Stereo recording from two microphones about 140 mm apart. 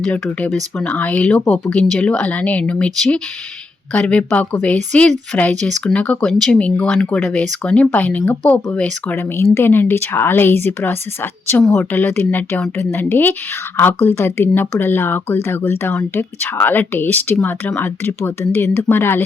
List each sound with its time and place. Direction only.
0.0 s speech: 10° left (ahead or behind)